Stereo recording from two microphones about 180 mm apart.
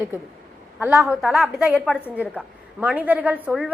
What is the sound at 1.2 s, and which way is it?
A woman's voice, centre (ahead or behind).